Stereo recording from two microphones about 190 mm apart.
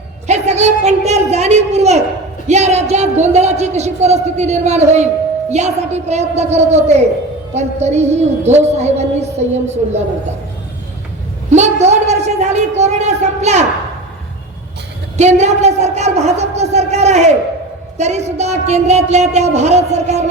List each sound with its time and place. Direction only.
0.3 s a man's voice: 35° right (ahead or behind)
11.5 s a man's voice: 35° right (ahead or behind)
15.2 s a man's voice: 35° right (ahead or behind)